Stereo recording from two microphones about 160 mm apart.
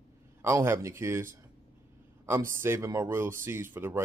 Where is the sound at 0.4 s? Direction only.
15° right (ahead or behind).